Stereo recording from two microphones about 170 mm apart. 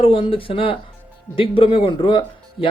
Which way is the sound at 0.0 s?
30° left (ahead or behind).